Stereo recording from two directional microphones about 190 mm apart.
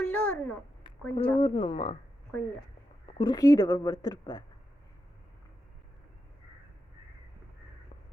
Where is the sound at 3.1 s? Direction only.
20° left (ahead or behind).